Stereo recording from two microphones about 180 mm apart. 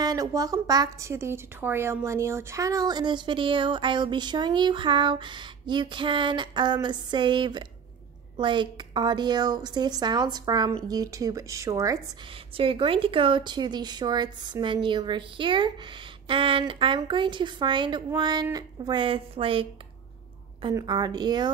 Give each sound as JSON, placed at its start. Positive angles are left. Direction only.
{"t": 0.0, "sound": "a woman's voice", "side_deg": -20}
{"t": 12.5, "sound": "a woman's voice", "side_deg": -30}